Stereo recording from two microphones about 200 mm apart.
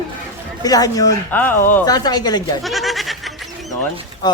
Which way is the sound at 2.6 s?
Centre (ahead or behind).